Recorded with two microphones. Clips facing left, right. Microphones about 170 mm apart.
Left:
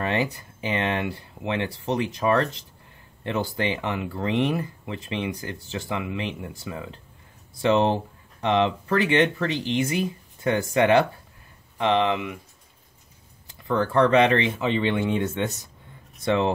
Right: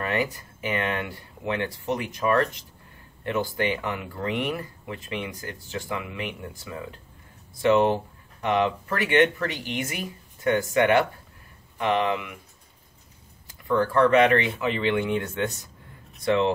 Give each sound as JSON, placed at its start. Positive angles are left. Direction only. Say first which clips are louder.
{"t": 0.0, "sound": "speech", "louder": "left 1 dB", "side_deg": 25}
{"t": 13.5, "sound": "speech", "louder": "right 1 dB", "side_deg": 20}